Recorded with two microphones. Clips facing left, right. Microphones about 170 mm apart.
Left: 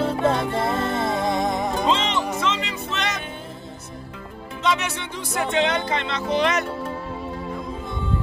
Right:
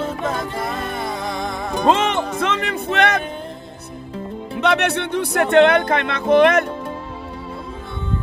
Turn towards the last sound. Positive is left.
turn(degrees=-55)  # may be behind; listen again after turning